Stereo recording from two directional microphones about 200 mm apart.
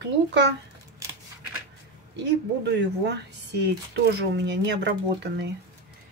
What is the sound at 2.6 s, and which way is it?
Speech, 60° right (ahead or behind).